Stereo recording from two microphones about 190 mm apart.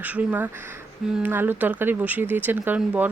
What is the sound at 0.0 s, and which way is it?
Speech, 10° right (ahead or behind).